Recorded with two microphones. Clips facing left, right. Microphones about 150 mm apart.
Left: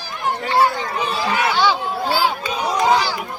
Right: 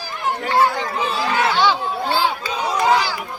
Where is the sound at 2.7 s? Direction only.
15° left (ahead or behind).